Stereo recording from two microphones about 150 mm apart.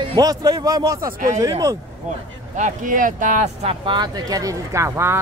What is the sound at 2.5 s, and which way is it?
Speech, 60° right (ahead or behind).